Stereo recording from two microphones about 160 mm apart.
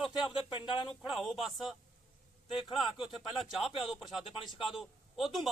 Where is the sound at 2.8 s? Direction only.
Centre (ahead or behind).